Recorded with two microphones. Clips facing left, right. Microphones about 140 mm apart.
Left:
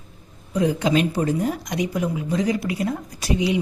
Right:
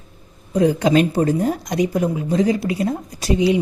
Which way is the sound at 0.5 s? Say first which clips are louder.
Right 5 dB; 40° right (ahead or behind).